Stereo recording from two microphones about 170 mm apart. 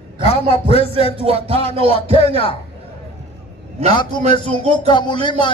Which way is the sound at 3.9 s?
25° left (ahead or behind).